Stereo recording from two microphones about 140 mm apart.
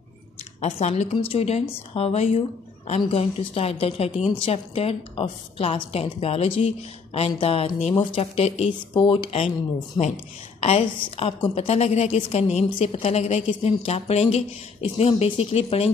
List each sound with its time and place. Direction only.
0.6 s a woman's voice: 50° left (ahead or behind)
10.6 s a woman's voice: 50° left (ahead or behind)